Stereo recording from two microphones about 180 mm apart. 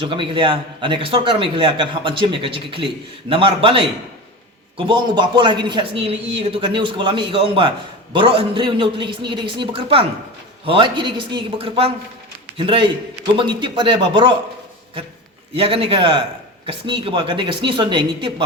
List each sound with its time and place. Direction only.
0.0 s speech: 30° right (ahead or behind)
15.5 s a man's voice: 30° right (ahead or behind)